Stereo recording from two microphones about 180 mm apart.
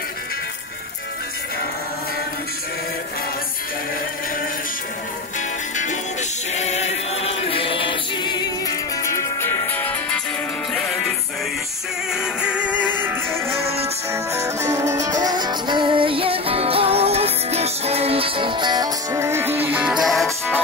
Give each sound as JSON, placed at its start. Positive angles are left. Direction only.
{"t": 6.5, "sound": "choir", "side_deg": 40}
{"t": 10.7, "sound": "music", "side_deg": 0}